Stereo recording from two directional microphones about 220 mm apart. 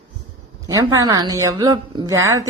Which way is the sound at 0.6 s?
15° right (ahead or behind).